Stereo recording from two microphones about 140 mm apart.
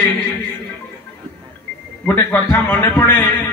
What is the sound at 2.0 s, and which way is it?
A man's voice, 15° left (ahead or behind).